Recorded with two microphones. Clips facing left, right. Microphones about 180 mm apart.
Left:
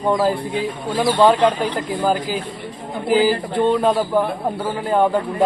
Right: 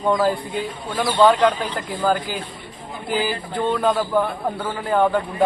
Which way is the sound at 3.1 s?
30° left (ahead or behind).